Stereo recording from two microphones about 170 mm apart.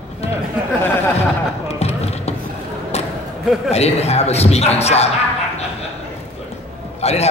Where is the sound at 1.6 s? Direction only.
40° left (ahead or behind).